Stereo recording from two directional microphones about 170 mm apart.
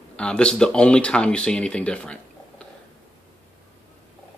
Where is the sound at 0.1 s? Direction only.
5° left (ahead or behind).